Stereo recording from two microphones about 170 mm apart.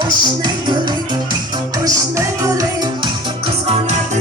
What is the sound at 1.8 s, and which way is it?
Music, 20° right (ahead or behind).